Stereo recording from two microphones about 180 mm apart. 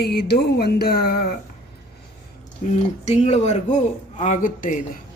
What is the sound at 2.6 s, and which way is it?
A man's voice, 40° left (ahead or behind).